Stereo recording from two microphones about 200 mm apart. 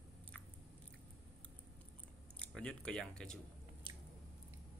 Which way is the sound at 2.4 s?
5° left (ahead or behind).